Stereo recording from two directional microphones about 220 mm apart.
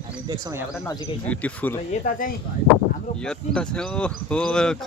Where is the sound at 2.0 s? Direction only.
35° left (ahead or behind).